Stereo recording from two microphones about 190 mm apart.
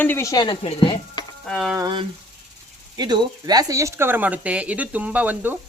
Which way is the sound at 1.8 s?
20° right (ahead or behind).